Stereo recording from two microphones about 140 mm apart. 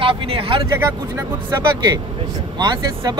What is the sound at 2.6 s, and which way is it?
Speech, 30° right (ahead or behind).